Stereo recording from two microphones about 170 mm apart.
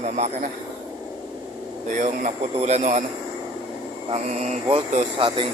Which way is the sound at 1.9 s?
45° right (ahead or behind).